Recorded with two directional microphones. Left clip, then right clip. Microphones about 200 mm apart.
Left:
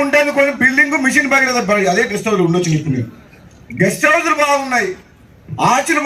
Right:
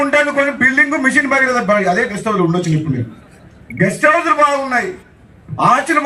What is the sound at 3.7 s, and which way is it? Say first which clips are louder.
A man's voice: even; 15° right (ahead or behind).